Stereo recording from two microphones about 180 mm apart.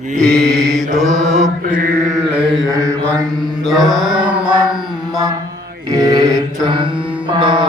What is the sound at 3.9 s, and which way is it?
Mantra, 5° right (ahead or behind).